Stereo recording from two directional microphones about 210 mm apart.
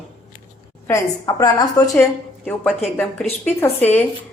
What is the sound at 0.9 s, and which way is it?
Speech, 15° left (ahead or behind).